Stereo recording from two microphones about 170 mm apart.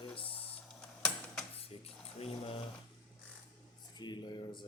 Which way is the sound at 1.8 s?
35° left (ahead or behind).